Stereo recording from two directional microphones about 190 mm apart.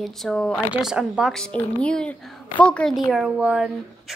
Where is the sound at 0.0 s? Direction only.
Centre (ahead or behind).